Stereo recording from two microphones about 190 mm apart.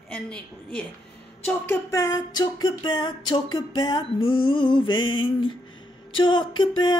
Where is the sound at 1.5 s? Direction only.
15° left (ahead or behind).